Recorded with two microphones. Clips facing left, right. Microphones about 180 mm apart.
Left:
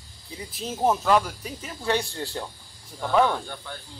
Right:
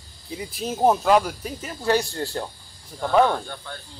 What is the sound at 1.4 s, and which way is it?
Speech, 40° right (ahead or behind).